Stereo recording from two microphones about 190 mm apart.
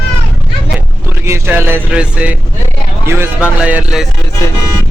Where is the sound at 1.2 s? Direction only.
15° right (ahead or behind).